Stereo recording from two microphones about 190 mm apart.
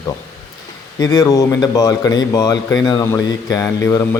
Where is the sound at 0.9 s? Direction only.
20° left (ahead or behind).